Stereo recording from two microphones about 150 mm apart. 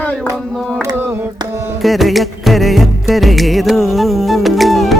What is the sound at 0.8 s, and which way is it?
Mantra, 20° right (ahead or behind).